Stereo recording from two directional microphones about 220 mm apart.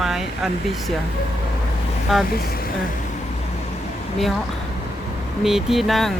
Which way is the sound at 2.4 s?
45° left (ahead or behind).